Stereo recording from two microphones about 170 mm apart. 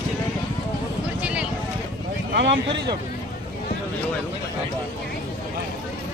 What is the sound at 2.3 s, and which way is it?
Speech, 90° right.